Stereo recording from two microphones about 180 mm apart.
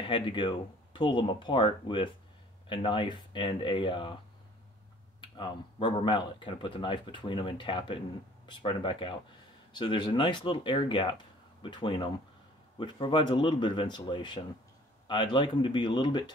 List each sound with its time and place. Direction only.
0.0 s speech: 30° left (ahead or behind)
5.2 s speech: 25° left (ahead or behind)